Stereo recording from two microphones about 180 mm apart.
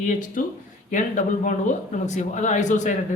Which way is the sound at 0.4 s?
50° left (ahead or behind).